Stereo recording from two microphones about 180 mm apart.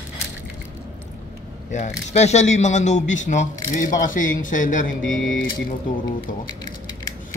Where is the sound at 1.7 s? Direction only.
40° left (ahead or behind).